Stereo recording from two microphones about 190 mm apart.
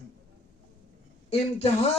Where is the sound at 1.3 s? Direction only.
30° left (ahead or behind).